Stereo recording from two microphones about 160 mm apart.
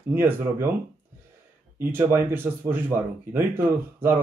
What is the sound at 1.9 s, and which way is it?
Speech, 15° right (ahead or behind).